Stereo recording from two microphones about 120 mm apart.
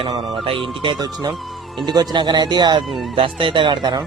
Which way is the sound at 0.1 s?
40° right (ahead or behind).